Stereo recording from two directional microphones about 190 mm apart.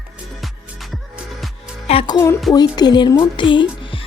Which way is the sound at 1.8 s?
30° left (ahead or behind).